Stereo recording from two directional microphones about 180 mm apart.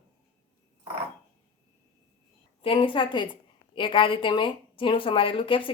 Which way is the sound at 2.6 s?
30° left (ahead or behind).